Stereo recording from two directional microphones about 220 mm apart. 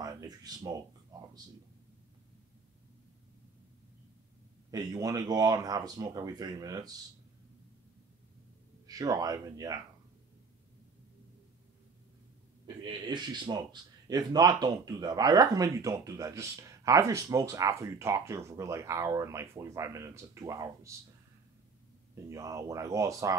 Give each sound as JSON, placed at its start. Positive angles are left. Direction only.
{"t": 0.0, "sound": "speech", "side_deg": -15}
{"t": 1.1, "sound": "a sound", "side_deg": -15}
{"t": 4.6, "sound": "speech", "side_deg": -15}
{"t": 8.8, "sound": "speech", "side_deg": -15}
{"t": 12.8, "sound": "speech", "side_deg": -20}
{"t": 22.1, "sound": "speech", "side_deg": -15}